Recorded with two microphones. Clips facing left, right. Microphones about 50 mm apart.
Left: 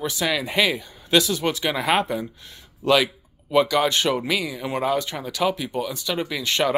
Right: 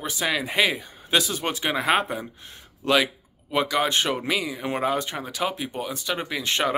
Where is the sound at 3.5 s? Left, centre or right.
Centre.